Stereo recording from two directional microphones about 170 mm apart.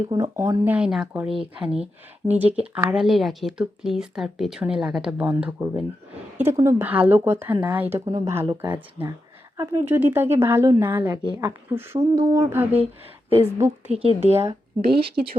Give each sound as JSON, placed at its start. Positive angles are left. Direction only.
{"t": 0.1, "sound": "speech", "side_deg": -20}
{"t": 13.8, "sound": "speech", "side_deg": -35}